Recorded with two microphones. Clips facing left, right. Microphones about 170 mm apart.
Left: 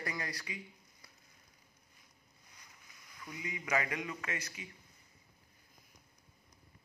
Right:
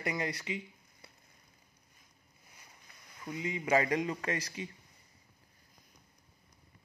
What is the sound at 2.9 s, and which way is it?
Boat, 60° right (ahead or behind).